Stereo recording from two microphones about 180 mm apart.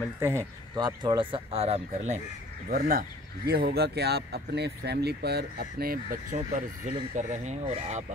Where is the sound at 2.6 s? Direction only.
55° right (ahead or behind).